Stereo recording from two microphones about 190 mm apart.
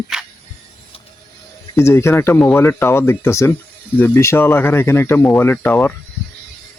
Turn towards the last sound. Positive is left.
turn(degrees=10)  # may be behind; listen again after turning